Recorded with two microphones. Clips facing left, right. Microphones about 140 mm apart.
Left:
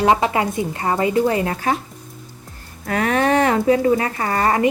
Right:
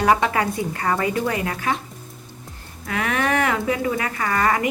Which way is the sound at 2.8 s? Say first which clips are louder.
Left 5 dB; 40° left (ahead or behind).